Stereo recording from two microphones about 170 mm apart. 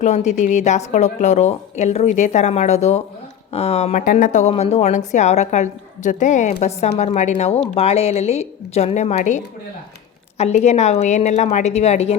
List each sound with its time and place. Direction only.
0.0 s a woman's voice: 45° left (ahead or behind)
4.0 s a woman's voice: 50° left (ahead or behind)